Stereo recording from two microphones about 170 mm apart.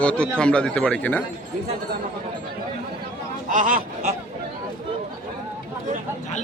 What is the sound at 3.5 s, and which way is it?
Speech, 55° right (ahead or behind).